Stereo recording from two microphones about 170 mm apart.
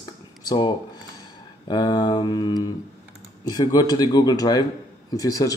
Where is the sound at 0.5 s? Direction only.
25° left (ahead or behind).